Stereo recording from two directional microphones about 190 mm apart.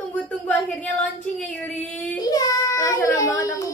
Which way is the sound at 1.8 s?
20° left (ahead or behind).